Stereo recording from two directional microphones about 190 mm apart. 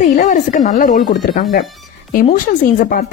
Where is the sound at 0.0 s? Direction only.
40° left (ahead or behind).